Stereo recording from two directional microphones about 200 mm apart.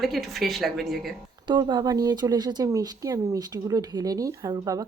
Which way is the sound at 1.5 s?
20° right (ahead or behind).